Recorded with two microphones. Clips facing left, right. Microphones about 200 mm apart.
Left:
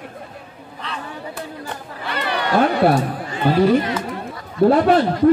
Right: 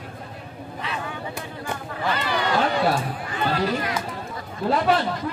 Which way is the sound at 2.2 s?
65° left (ahead or behind).